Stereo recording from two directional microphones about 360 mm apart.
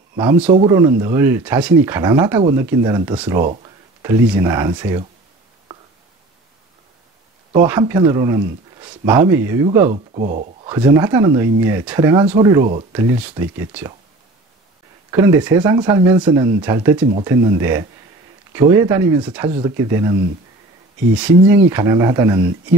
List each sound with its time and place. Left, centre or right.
0.1 s speech: centre
7.6 s speech: centre
15.0 s speech: centre